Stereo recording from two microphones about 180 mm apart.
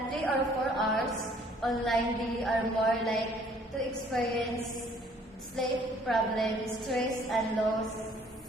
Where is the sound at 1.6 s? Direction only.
Centre (ahead or behind).